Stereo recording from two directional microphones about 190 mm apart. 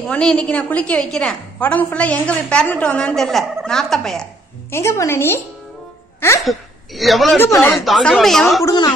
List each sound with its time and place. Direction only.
0.1 s a woman's voice: 5° left (ahead or behind)
4.6 s a woman's voice: 15° left (ahead or behind)
6.4 s a woman's voice: centre (ahead or behind)
8.6 s speech: 20° left (ahead or behind)